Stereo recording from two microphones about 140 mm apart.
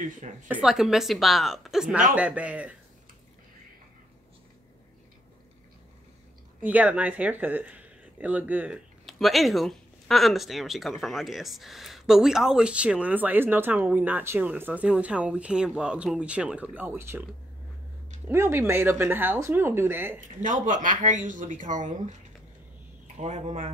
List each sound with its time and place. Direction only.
0.0 s a woman's voice: 65° right (ahead or behind)
0.5 s a woman's voice: 5° right (ahead or behind)
6.6 s speech: 10° right (ahead or behind)
18.2 s speech: 20° right (ahead or behind)
20.4 s speech: 65° right (ahead or behind)
23.1 s speech: 55° right (ahead or behind)